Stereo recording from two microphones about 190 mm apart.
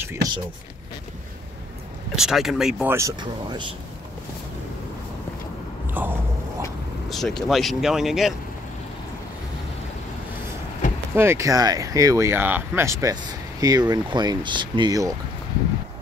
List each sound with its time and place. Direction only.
0.0 s speech: 15° right (ahead or behind)
2.1 s speech: centre (ahead or behind); by 3.7 s 25° right (ahead or behind)
5.9 s a sound: 10° right (ahead or behind)
7.1 s speech: centre (ahead or behind)
11.1 s speech: 15° right (ahead or behind)